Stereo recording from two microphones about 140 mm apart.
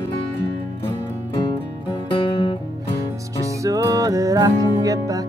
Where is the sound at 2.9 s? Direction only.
25° right (ahead or behind).